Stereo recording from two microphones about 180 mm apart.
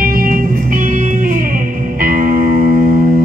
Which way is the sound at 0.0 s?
55° right (ahead or behind).